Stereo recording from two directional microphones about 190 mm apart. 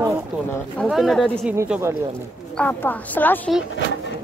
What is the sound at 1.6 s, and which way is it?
Speech, 15° right (ahead or behind).